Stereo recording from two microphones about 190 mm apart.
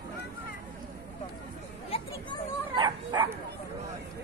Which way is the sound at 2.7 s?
25° right (ahead or behind).